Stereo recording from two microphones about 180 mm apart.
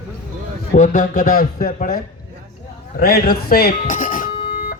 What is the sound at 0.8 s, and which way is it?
Speech, 50° left (ahead or behind).